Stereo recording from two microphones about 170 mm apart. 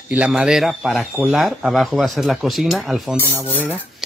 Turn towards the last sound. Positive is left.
turn(degrees=10)  # may be behind; listen again after turning